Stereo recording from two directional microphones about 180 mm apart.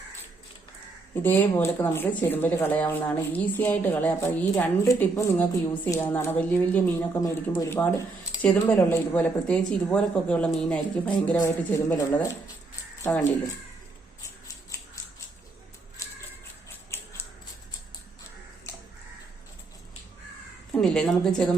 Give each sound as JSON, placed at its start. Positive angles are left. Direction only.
{"t": 1.1, "sound": "speech", "side_deg": 10}
{"t": 14.2, "sound": "scissors", "side_deg": 20}
{"t": 16.9, "sound": "a sound", "side_deg": 15}
{"t": 20.7, "sound": "a woman's voice", "side_deg": 5}